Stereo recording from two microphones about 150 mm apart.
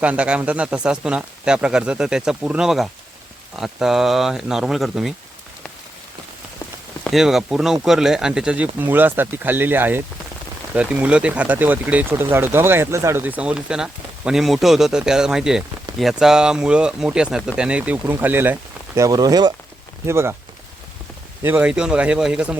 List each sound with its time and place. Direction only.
0.0 s speech: 10° right (ahead or behind)
7.0 s speech: centre (ahead or behind); by 20.3 s 15° right (ahead or behind)
21.4 s speech: 10° right (ahead or behind)